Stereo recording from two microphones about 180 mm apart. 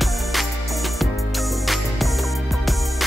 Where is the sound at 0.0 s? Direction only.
Centre (ahead or behind).